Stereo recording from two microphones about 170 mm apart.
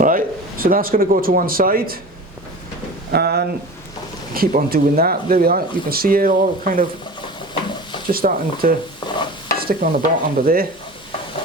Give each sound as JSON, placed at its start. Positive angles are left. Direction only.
{"t": 0.0, "sound": "a man's voice", "side_deg": -55}
{"t": 3.1, "sound": "speech", "side_deg": -70}
{"t": 8.1, "sound": "speech", "side_deg": -60}
{"t": 9.0, "sound": "stir", "side_deg": 25}
{"t": 9.6, "sound": "speech", "side_deg": -60}